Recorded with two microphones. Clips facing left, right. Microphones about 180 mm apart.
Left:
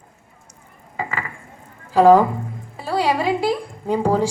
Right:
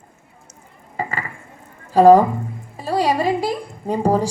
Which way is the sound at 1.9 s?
40° right (ahead or behind).